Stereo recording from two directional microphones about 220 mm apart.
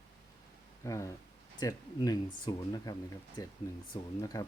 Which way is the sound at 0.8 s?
15° left (ahead or behind).